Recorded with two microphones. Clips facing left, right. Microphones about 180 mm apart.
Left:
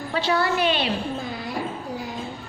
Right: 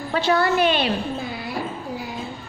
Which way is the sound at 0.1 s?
50° right (ahead or behind).